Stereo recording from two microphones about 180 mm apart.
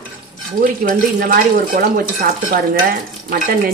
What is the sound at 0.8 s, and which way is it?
Speech, 55° right (ahead or behind).